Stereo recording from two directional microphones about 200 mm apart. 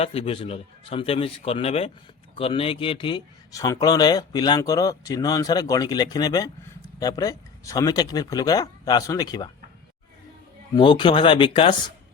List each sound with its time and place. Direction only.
0.0 s speech: 30° left (ahead or behind)
10.8 s speech: 25° left (ahead or behind)